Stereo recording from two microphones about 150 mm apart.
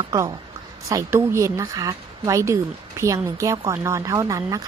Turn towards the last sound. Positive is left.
turn(degrees=-20)  # may be behind; listen again after turning